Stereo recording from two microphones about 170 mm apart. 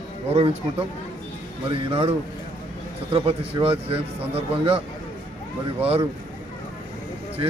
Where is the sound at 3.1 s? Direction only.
35° right (ahead or behind).